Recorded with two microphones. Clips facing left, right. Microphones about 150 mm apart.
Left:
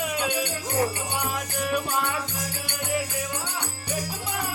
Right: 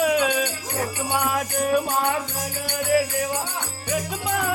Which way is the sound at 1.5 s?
45° right (ahead or behind).